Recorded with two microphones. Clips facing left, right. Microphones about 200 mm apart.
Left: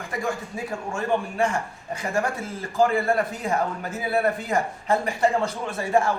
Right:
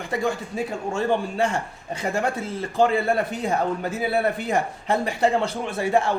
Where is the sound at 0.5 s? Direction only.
30° right (ahead or behind).